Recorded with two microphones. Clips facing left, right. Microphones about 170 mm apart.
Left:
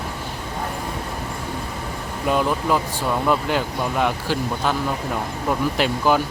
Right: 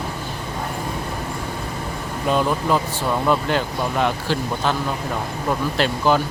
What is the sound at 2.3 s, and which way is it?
Speech, 5° left (ahead or behind).